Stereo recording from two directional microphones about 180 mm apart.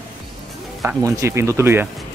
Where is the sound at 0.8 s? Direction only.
15° right (ahead or behind).